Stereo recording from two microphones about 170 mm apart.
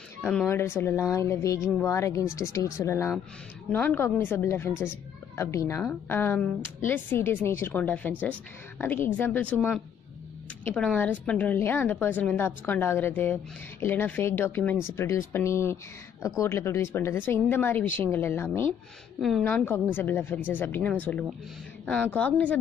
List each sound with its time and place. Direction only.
0.2 s a woman's voice: 5° left (ahead or behind)
10.7 s a woman's voice: 10° left (ahead or behind)